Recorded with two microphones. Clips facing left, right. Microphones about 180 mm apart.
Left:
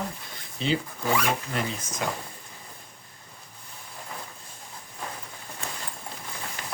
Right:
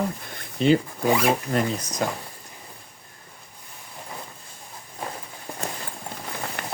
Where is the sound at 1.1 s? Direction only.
25° right (ahead or behind).